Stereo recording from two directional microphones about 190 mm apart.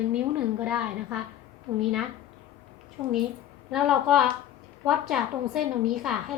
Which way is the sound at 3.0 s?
15° right (ahead or behind).